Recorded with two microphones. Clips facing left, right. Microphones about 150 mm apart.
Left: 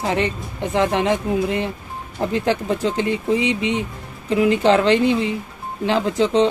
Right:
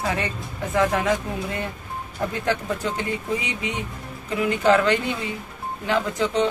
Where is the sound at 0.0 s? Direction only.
25° left (ahead or behind).